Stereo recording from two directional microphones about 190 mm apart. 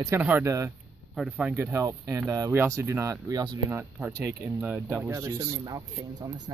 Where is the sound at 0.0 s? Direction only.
10° right (ahead or behind).